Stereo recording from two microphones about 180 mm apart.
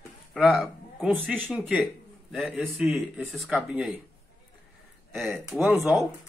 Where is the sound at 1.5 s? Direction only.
Centre (ahead or behind).